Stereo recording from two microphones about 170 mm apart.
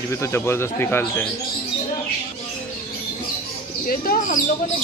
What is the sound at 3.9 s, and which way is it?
Speech, 60° left (ahead or behind).